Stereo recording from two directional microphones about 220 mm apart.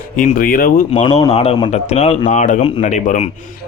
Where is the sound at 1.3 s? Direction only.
25° left (ahead or behind).